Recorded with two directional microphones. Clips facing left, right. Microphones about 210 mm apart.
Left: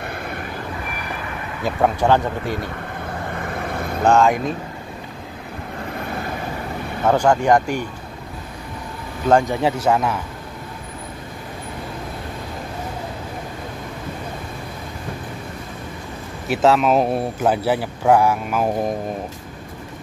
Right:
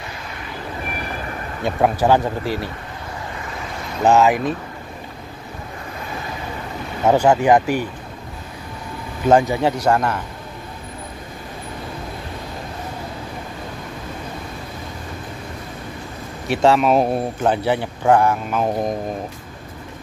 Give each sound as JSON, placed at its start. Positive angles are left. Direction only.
{"t": 0.0, "sound": "vehicle", "side_deg": 55}
{"t": 1.6, "sound": "speech", "side_deg": -5}
{"t": 2.4, "sound": "vehicle", "side_deg": 50}
{"t": 4.0, "sound": "speech", "side_deg": -5}
{"t": 7.1, "sound": "speech", "side_deg": -5}
{"t": 9.3, "sound": "speech", "side_deg": -5}
{"t": 16.4, "sound": "speech", "side_deg": 0}